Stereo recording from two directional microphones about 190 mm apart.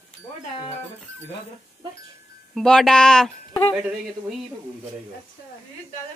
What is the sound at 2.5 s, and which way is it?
Speech, centre (ahead or behind).